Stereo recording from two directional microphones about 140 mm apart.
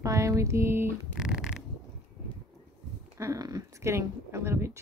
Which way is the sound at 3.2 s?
25° right (ahead or behind).